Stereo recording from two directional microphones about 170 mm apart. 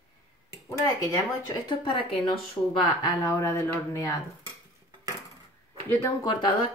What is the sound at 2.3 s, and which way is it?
Speech, 30° left (ahead or behind).